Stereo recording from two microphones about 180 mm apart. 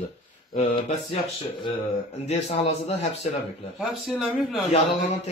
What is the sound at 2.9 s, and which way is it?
Speech, 40° left (ahead or behind).